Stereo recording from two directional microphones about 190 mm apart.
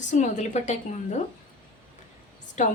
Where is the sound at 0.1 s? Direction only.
40° left (ahead or behind).